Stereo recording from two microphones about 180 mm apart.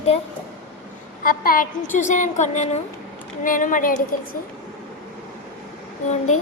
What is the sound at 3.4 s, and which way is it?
Speech, 50° left (ahead or behind).